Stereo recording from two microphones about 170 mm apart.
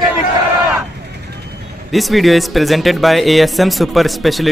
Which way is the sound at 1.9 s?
Centre (ahead or behind).